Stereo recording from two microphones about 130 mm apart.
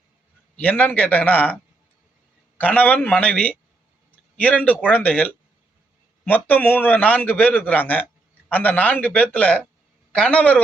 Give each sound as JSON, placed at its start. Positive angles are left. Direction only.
{"t": 0.5, "sound": "a man's voice", "side_deg": 10}
{"t": 2.6, "sound": "a man's voice", "side_deg": 10}